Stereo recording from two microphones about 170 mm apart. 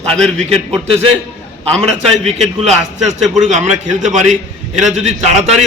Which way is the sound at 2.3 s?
40° right (ahead or behind).